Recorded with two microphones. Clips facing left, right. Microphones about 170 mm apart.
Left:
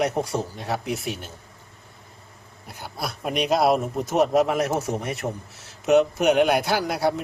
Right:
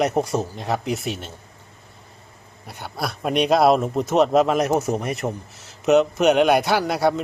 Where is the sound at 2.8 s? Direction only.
60° right (ahead or behind).